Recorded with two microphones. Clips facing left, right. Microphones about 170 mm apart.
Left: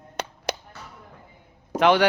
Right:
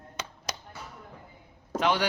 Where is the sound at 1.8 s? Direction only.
70° left (ahead or behind).